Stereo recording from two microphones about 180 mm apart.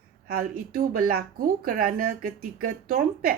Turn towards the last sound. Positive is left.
turn(degrees=-55)  # may be behind; listen again after turning